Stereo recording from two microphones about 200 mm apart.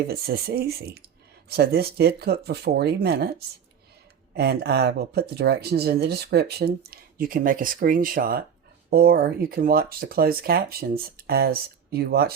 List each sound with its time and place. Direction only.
0.1 s speech: 50° right (ahead or behind)